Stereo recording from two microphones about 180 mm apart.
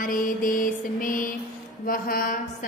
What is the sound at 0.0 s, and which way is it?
Mantra, 50° left (ahead or behind).